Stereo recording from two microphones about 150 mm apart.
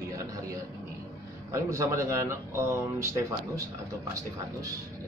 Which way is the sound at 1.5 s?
20° right (ahead or behind).